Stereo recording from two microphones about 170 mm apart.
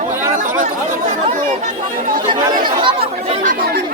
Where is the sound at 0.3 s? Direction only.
50° right (ahead or behind).